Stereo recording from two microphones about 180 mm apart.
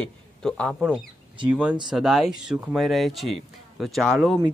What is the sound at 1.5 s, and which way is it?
Speech, 5° right (ahead or behind).